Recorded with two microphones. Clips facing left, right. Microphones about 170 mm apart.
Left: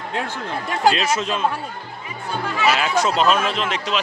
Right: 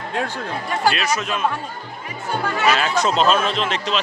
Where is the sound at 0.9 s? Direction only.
25° left (ahead or behind).